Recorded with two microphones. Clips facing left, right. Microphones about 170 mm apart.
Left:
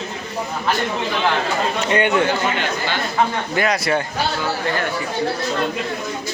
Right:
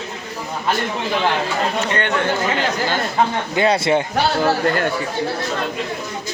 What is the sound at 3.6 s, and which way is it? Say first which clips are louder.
Speech: right 4 dB; 25° right (ahead or behind).